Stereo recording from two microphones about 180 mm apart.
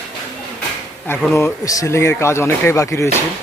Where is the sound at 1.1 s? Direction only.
15° left (ahead or behind).